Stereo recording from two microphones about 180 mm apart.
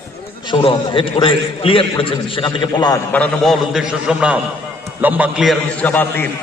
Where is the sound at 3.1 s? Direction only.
5° left (ahead or behind).